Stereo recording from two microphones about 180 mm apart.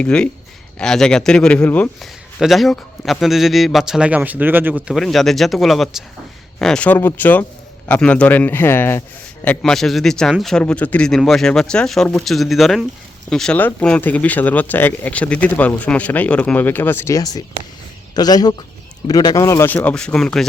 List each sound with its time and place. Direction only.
0.0 s a man's voice: 5° left (ahead or behind)